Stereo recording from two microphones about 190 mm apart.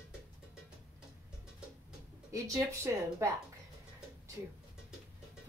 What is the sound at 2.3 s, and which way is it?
A woman's voice, 15° right (ahead or behind).